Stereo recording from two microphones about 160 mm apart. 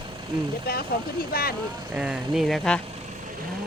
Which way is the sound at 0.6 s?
75° left (ahead or behind).